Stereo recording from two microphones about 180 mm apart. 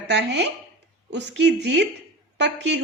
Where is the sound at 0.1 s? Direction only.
75° right (ahead or behind).